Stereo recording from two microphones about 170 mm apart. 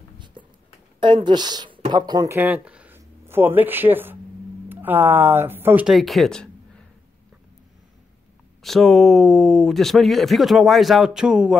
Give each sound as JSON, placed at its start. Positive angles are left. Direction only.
{"t": 0.2, "sound": "a sound", "side_deg": -30}
{"t": 0.9, "sound": "a woman's voice", "side_deg": -30}
{"t": 2.2, "sound": "speech", "side_deg": -10}
{"t": 5.9, "sound": "speech", "side_deg": 0}
{"t": 8.6, "sound": "speech", "side_deg": 0}